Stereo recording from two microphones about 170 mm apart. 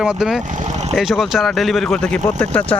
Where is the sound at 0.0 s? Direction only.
5° right (ahead or behind).